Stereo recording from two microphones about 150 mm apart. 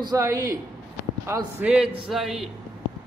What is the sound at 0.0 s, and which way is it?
A man's voice, 25° right (ahead or behind).